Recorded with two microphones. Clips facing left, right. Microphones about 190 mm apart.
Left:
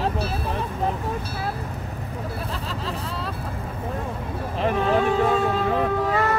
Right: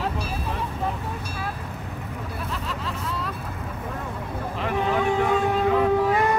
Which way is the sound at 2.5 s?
35° left (ahead or behind).